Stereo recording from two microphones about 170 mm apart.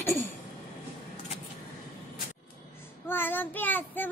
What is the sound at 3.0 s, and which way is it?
Child singing, 10° left (ahead or behind).